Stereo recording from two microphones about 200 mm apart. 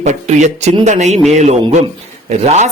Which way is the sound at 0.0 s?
35° right (ahead or behind).